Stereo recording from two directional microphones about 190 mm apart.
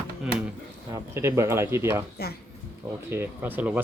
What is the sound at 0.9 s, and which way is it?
Speech, 15° right (ahead or behind).